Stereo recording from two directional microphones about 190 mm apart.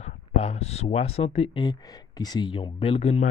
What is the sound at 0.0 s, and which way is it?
Speech, 35° left (ahead or behind).